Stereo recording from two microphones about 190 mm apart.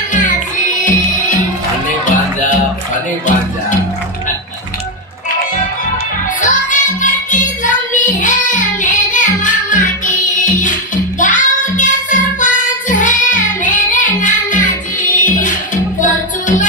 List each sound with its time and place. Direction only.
0.1 s music: 45° left (ahead or behind)
6.4 s music: 40° left (ahead or behind)